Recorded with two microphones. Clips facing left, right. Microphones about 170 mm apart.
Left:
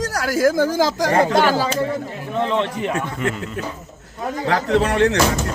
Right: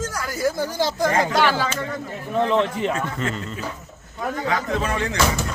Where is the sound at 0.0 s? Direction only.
75° left (ahead or behind); by 1.1 s 90° left.